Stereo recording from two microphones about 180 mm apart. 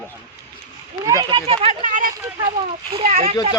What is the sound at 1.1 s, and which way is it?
Speech, 20° right (ahead or behind).